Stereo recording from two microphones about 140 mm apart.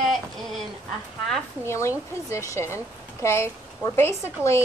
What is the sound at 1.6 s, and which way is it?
A woman's voice, 20° left (ahead or behind).